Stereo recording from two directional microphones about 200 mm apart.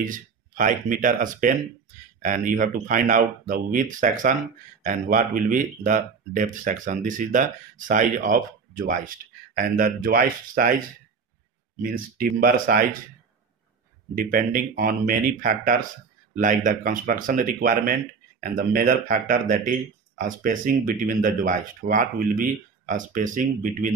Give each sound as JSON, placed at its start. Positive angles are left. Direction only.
{"t": 0.0, "sound": "speech", "side_deg": -40}
{"t": 11.9, "sound": "speech", "side_deg": -45}
{"t": 14.1, "sound": "speech", "side_deg": -45}